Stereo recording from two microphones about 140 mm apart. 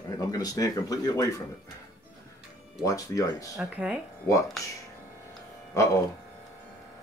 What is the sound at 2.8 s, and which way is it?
Speech, 25° left (ahead or behind).